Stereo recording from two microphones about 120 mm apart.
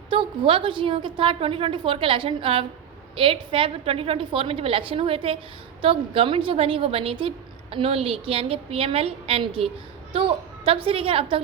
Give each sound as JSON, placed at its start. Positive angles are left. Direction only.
{"t": 0.1, "sound": "a woman's voice", "side_deg": -45}